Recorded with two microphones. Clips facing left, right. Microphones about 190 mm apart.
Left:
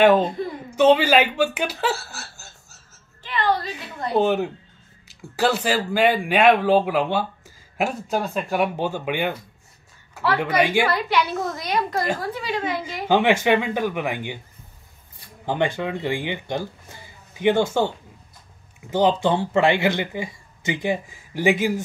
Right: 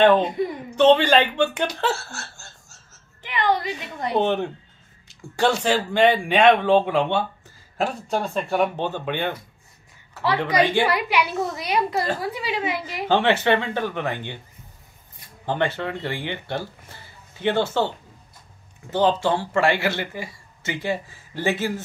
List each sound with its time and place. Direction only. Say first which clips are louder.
0.7 s speech: even; 10° left (ahead or behind)
3.2 s a sound: even; 15° right (ahead or behind)
4.2 s speech: left 3 dB; 5° left (ahead or behind)
10.6 s speech: even; 10° left (ahead or behind)
10.9 s a woman's voice: even; 10° right (ahead or behind)
13.1 s speech: left 1 dB; 10° left (ahead or behind)
15.4 s speech: left 1 dB; 15° left (ahead or behind)